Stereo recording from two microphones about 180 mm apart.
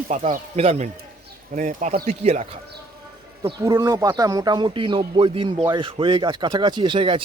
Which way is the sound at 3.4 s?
25° right (ahead or behind).